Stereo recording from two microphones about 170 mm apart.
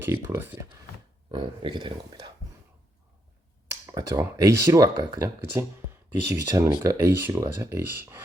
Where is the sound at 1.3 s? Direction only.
30° right (ahead or behind).